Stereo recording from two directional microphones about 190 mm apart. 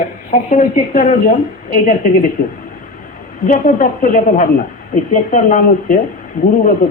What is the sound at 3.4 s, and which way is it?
A woman's voice, 45° left (ahead or behind).